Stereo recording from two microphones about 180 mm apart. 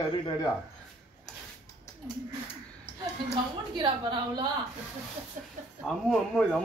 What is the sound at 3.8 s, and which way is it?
Speech, 25° right (ahead or behind).